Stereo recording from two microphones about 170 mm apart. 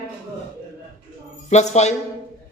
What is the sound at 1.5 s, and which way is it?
Speech, 40° left (ahead or behind).